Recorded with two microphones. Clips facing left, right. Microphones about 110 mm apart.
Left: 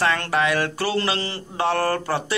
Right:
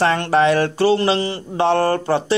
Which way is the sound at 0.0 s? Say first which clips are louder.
Right 6 dB; 30° right (ahead or behind).